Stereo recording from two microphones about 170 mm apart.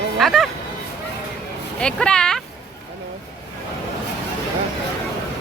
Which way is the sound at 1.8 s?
5° left (ahead or behind).